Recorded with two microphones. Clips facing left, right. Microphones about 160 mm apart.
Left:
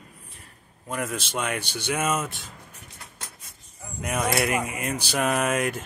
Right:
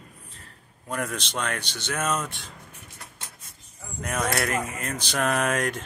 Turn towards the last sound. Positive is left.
turn(degrees=5)  # may be behind; listen again after turning